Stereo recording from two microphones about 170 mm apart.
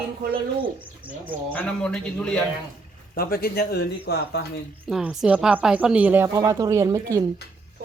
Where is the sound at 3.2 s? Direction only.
60° left (ahead or behind).